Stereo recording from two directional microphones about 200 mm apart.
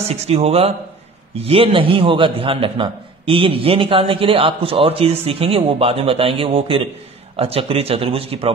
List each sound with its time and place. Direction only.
0.3 s a man's voice: 30° right (ahead or behind)